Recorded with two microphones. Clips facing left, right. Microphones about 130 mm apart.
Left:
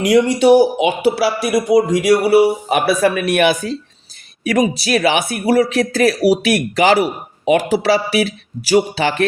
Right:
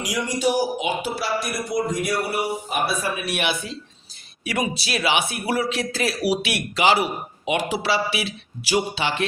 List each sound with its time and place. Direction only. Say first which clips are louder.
0.0 s speech: left 11 dB; 65° left (ahead or behind); by 3.2 s 85° left
3.2 s speech: left 11 dB; 50° left (ahead or behind)